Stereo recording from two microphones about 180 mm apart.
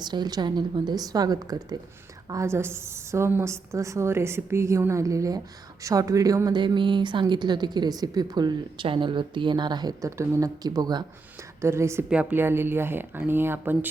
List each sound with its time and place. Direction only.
0.0 s a woman's voice: 25° right (ahead or behind)